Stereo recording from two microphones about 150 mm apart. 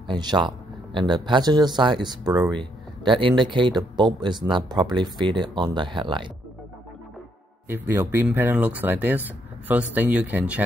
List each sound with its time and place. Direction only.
0.0 s speech: 30° right (ahead or behind)
7.6 s speech: 15° right (ahead or behind)